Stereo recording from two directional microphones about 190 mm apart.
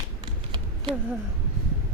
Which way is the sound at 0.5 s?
25° right (ahead or behind).